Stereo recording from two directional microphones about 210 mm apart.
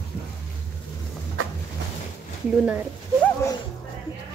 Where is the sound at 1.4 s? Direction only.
75° right (ahead or behind).